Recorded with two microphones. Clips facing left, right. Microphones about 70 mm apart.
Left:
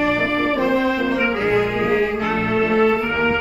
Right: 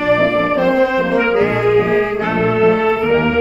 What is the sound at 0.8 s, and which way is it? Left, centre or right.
Brass instrument, right.